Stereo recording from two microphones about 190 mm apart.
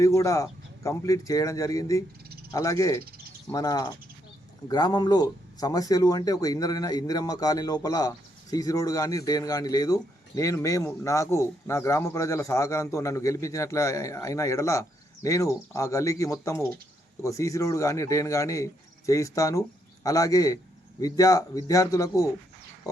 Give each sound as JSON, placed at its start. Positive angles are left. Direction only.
{"t": 0.0, "sound": "speech", "side_deg": 15}